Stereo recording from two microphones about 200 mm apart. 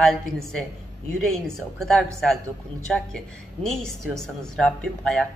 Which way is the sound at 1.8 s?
5° left (ahead or behind).